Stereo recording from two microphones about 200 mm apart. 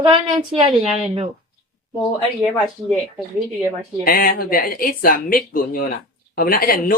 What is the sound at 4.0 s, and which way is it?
Speech, 45° left (ahead or behind).